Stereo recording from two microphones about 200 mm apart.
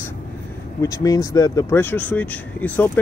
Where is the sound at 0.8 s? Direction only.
20° left (ahead or behind).